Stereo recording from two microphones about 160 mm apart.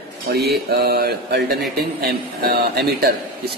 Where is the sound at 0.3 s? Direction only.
90° right.